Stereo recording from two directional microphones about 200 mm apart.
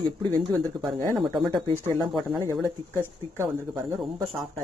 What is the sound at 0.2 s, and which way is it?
Speech, 20° right (ahead or behind).